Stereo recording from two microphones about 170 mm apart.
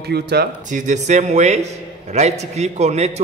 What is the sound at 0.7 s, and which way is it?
A man's voice, 45° right (ahead or behind).